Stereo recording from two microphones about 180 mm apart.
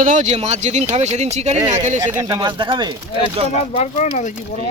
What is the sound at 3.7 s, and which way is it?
Speech, 40° left (ahead or behind).